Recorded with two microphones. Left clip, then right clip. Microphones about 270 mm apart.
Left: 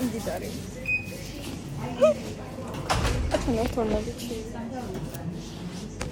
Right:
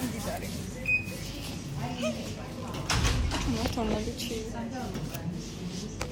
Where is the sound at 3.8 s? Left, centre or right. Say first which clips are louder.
Left 4 dB; right.